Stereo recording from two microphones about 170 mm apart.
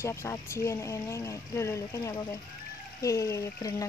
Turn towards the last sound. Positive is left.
turn(degrees=20)  # may be behind; listen again after turning